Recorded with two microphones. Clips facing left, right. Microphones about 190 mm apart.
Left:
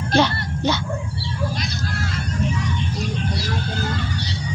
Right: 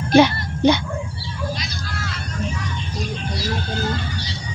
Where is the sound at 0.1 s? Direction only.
15° right (ahead or behind).